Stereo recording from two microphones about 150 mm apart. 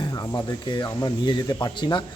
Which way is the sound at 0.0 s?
25° left (ahead or behind).